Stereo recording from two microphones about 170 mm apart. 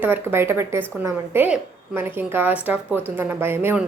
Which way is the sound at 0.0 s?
10° right (ahead or behind).